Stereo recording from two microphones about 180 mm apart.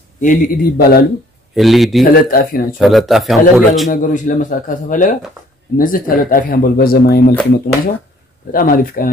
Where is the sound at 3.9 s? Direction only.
45° left (ahead or behind).